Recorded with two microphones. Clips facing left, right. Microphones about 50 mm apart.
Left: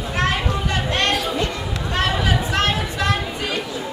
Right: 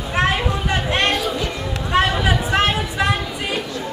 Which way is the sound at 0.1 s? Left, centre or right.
Centre.